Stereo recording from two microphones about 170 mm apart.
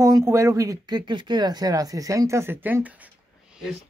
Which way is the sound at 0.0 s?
20° right (ahead or behind).